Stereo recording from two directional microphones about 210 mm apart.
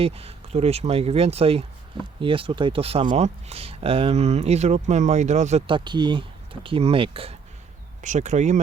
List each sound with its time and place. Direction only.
0.0 s speech: 30° right (ahead or behind)